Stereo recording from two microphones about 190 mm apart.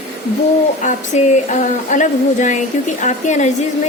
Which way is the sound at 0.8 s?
40° left (ahead or behind).